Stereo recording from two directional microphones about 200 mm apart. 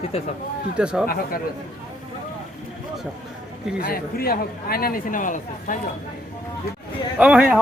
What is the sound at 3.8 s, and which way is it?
Speech, 50° left (ahead or behind).